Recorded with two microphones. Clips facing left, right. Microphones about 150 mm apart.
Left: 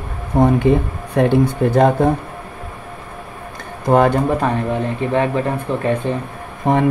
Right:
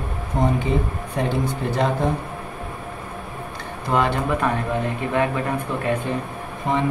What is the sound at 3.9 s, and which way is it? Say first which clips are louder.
Speech: left 7 dB; 45° left (ahead or behind).